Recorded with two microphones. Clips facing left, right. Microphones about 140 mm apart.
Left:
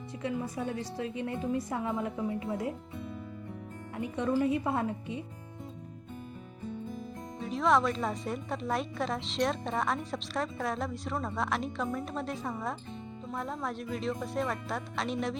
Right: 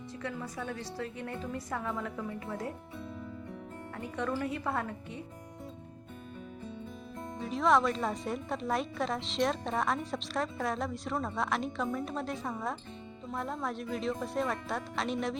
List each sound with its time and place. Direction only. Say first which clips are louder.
0.2 s a woman's voice: left 5 dB; 20° left (ahead or behind)
3.9 s a woman's voice: left 5 dB; 20° left (ahead or behind)
7.3 s a woman's voice: even; centre (ahead or behind)